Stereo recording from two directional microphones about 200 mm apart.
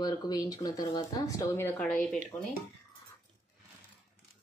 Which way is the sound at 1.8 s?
5° left (ahead or behind).